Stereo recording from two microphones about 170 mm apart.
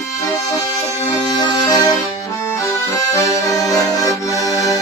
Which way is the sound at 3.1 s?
20° left (ahead or behind).